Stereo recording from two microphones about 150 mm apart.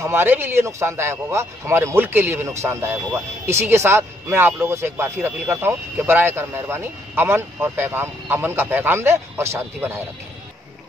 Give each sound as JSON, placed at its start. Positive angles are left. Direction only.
{"t": 0.0, "sound": "a man's voice", "side_deg": -15}